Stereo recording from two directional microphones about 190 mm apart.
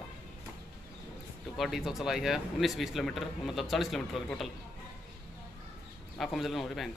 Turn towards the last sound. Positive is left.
turn(degrees=0)  # may be behind; listen again after turning